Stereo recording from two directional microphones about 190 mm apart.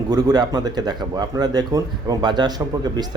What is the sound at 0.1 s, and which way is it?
Speech, 20° right (ahead or behind).